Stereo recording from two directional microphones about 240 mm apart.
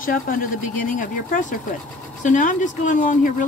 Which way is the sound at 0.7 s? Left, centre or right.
Left.